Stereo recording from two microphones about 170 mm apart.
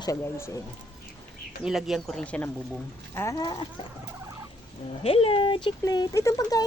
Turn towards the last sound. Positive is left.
turn(degrees=20)  # may be behind; listen again after turning